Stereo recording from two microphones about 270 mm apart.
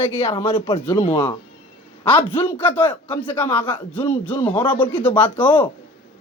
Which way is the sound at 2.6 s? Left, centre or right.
Centre.